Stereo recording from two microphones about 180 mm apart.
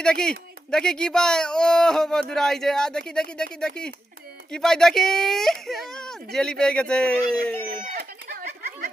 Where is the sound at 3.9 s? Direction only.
60° right (ahead or behind).